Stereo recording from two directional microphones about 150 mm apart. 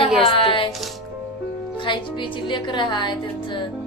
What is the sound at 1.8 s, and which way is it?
Speech, 30° left (ahead or behind).